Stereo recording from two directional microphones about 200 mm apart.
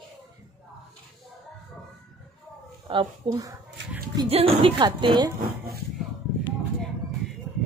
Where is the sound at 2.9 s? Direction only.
20° right (ahead or behind).